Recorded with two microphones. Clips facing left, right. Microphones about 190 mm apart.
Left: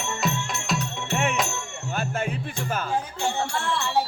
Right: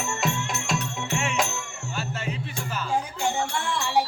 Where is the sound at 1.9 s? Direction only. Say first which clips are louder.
Left 4 dB; 50° left (ahead or behind).